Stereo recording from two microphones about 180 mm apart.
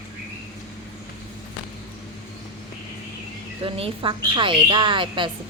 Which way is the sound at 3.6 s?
30° right (ahead or behind).